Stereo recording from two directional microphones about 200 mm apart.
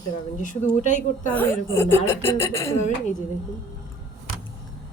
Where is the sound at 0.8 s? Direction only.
40° left (ahead or behind).